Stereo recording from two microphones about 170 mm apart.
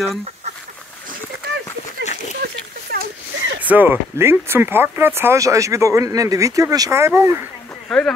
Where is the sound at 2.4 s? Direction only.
65° right (ahead or behind).